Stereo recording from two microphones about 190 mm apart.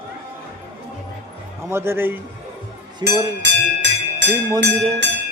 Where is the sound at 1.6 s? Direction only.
15° right (ahead or behind).